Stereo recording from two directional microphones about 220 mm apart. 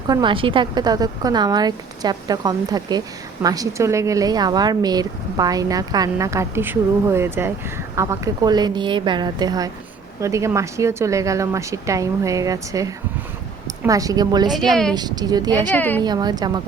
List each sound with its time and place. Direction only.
0.1 s a woman's voice: 20° right (ahead or behind)
14.5 s a woman's voice: centre (ahead or behind)
14.9 s speech: 20° right (ahead or behind)
15.7 s a woman's voice: 10° left (ahead or behind)
16.0 s a woman's voice: 20° right (ahead or behind)